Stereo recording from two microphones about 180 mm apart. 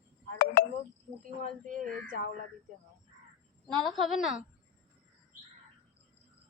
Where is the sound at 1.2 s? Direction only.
50° right (ahead or behind).